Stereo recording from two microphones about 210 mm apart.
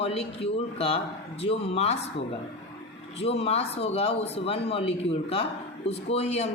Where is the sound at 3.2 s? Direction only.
30° left (ahead or behind).